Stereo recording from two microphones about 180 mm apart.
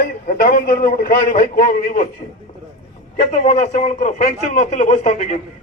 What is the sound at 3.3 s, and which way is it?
A man's voice, 35° left (ahead or behind).